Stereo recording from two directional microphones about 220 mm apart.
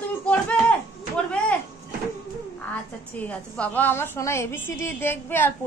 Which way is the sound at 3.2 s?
5° left (ahead or behind).